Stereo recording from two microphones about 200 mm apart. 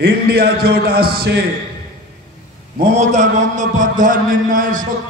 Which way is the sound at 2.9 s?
35° right (ahead or behind).